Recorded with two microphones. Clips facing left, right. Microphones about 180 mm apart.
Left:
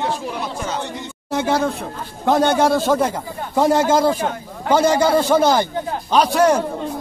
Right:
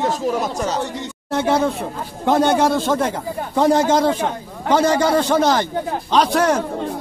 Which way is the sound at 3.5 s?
5° left (ahead or behind).